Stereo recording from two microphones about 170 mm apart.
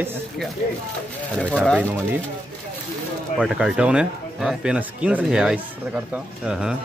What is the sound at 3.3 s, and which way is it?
Speech, 5° right (ahead or behind).